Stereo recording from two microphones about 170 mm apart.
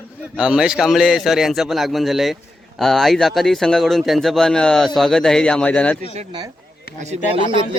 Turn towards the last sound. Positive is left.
turn(degrees=-35)  # may be behind; listen again after turning